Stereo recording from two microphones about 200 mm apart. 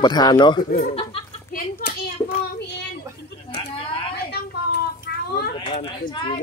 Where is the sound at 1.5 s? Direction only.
45° left (ahead or behind).